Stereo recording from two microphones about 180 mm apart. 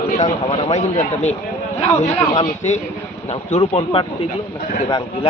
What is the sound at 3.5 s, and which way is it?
Speech, 35° left (ahead or behind).